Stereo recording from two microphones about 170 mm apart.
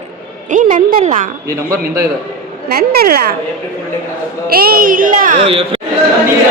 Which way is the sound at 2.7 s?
60° right (ahead or behind).